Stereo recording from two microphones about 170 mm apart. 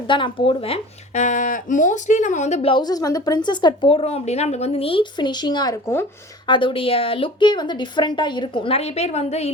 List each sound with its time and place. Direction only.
0.1 s speech: 30° left (ahead or behind)
6.5 s a woman's voice: 30° left (ahead or behind)